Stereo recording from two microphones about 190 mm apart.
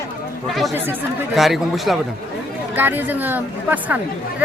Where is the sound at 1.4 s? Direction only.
Centre (ahead or behind).